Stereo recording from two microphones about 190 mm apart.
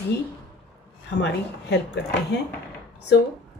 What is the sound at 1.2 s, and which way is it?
Speech, 65° left (ahead or behind).